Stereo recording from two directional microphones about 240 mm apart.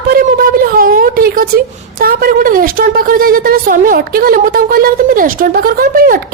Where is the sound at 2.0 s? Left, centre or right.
Right.